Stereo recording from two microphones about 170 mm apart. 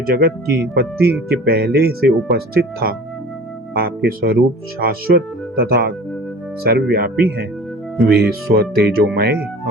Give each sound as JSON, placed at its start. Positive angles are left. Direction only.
{"t": 0.0, "sound": "speech", "side_deg": -60}
{"t": 3.8, "sound": "speech", "side_deg": -65}